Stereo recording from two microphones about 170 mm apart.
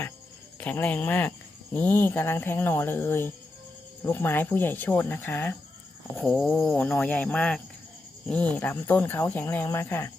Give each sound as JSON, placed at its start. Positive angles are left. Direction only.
{"t": 0.6, "sound": "speech", "side_deg": 10}